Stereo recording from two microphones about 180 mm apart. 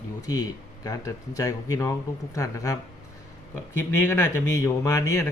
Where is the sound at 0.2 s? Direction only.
20° left (ahead or behind).